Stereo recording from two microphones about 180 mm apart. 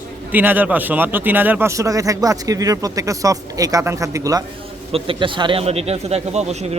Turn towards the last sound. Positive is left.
turn(degrees=-40)  # may be behind; listen again after turning